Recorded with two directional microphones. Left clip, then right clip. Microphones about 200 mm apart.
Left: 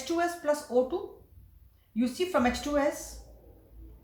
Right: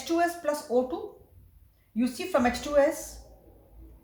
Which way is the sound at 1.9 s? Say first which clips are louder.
Right 1 dB; 30° right (ahead or behind).